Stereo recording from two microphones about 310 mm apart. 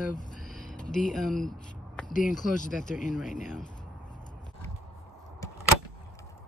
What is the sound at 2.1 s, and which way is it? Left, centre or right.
Speech, left.